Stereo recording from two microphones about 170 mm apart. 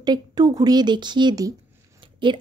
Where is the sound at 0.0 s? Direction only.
25° right (ahead or behind).